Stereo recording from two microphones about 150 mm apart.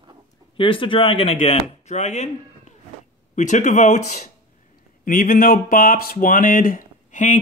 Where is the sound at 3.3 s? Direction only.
55° left (ahead or behind).